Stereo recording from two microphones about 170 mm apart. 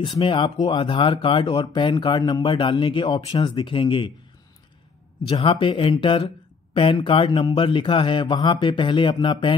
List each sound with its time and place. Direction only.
0.0 s speech: 30° left (ahead or behind)
5.3 s speech: 30° left (ahead or behind)